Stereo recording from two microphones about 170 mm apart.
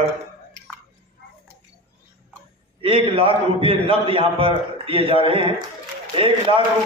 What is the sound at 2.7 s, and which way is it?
A man's voice, 30° right (ahead or behind).